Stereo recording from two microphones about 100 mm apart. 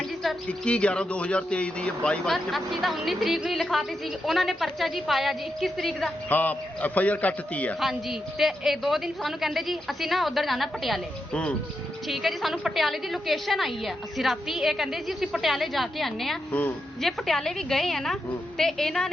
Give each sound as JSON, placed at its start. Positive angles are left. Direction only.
{"t": 0.4, "sound": "speech", "side_deg": 10}
{"t": 6.2, "sound": "a man's voice", "side_deg": 15}
{"t": 7.8, "sound": "speech", "side_deg": 0}
{"t": 16.5, "sound": "a man's voice", "side_deg": 15}
{"t": 17.0, "sound": "speech", "side_deg": 0}